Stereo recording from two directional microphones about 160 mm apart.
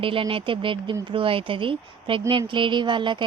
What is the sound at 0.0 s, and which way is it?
Speech, 35° right (ahead or behind).